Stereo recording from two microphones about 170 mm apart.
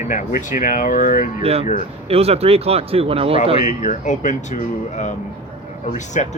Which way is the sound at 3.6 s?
45° left (ahead or behind).